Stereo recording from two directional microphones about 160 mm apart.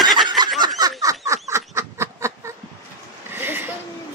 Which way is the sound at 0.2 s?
25° right (ahead or behind).